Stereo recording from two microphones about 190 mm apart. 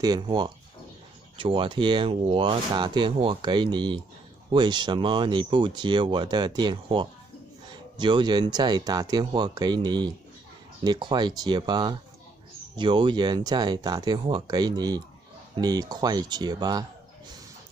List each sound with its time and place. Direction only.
0.0 s speech: 20° right (ahead or behind)